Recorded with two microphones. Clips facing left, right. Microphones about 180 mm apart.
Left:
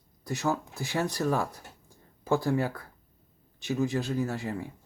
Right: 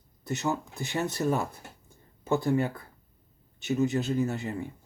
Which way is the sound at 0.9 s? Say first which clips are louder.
Even; 20° right (ahead or behind).